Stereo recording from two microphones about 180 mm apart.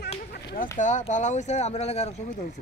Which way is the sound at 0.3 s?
60° left (ahead or behind).